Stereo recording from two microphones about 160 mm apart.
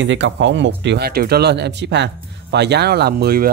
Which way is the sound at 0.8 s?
85° right.